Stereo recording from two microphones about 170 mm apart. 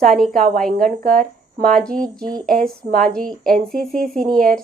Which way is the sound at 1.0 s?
55° right (ahead or behind).